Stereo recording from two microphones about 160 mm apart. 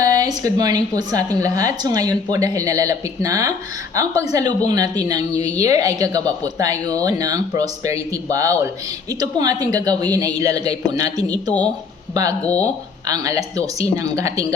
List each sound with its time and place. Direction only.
0.0 s a woman's voice: 20° right (ahead or behind)
12.4 s speech: 10° left (ahead or behind)
12.6 s a woman's voice: 25° right (ahead or behind)